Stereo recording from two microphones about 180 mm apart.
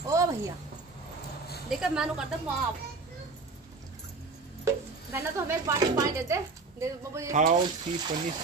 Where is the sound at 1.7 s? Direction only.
5° right (ahead or behind).